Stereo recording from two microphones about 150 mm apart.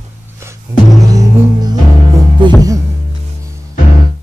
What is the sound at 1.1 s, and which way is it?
Music, 20° right (ahead or behind).